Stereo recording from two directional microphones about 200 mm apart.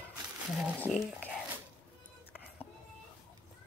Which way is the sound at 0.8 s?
10° left (ahead or behind).